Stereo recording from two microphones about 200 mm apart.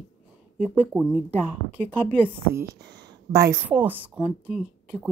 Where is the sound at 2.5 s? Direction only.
15° right (ahead or behind).